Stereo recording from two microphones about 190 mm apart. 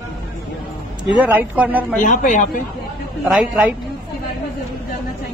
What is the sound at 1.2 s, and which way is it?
Speech, 10° right (ahead or behind).